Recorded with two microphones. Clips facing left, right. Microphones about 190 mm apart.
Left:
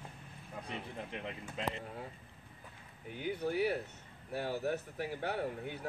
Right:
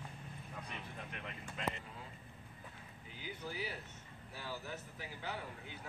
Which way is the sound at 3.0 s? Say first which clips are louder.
Left 11 dB; 60° left (ahead or behind).